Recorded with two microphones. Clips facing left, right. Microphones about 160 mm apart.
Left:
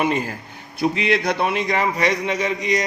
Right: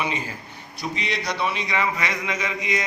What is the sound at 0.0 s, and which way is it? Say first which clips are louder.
A man's voice: left 7 dB; 50° left (ahead or behind).